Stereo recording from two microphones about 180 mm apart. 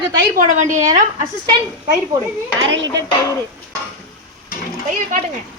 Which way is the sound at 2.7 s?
90° right.